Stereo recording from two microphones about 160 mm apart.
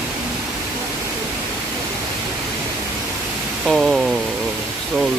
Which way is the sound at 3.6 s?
Centre (ahead or behind).